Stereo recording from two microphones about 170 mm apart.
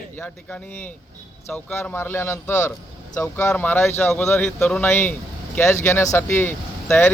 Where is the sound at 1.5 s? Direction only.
10° left (ahead or behind).